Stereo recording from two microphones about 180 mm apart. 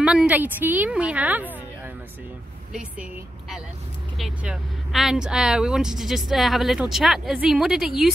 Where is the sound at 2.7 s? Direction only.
5° right (ahead or behind).